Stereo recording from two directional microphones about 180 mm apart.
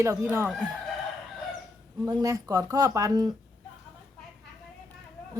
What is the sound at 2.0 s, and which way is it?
Speech, 20° right (ahead or behind).